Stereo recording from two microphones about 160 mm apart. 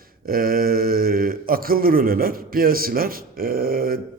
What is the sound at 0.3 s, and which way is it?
A man's voice, 65° right (ahead or behind).